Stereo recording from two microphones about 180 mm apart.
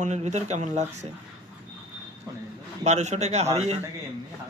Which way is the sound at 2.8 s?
40° right (ahead or behind).